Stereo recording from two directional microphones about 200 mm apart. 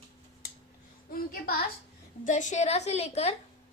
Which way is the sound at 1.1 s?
45° left (ahead or behind).